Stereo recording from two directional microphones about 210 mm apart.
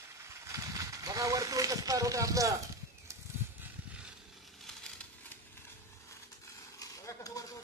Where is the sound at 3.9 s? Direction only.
5° right (ahead or behind).